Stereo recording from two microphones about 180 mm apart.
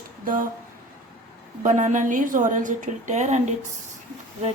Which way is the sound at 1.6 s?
45° right (ahead or behind).